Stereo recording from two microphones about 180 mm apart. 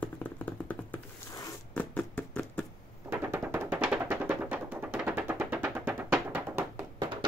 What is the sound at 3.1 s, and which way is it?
Music, 15° right (ahead or behind).